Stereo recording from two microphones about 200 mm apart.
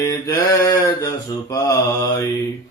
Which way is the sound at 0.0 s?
15° left (ahead or behind).